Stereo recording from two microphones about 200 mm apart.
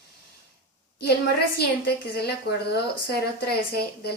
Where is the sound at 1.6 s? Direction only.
55° left (ahead or behind).